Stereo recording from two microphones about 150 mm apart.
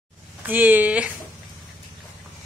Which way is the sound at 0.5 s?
10° right (ahead or behind).